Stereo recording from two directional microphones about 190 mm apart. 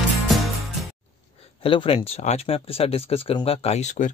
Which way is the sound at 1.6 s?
30° left (ahead or behind).